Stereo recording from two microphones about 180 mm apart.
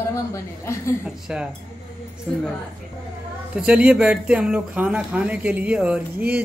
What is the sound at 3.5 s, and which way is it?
Speech, 5° right (ahead or behind).